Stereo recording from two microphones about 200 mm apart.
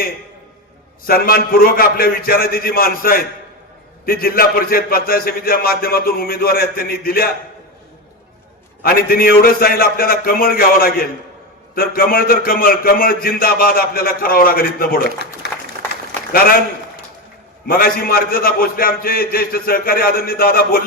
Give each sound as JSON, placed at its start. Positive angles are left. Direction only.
{"t": 1.0, "sound": "a man's voice", "side_deg": 50}
{"t": 8.8, "sound": "a man's voice", "side_deg": 45}
{"t": 17.7, "sound": "a man's voice", "side_deg": 45}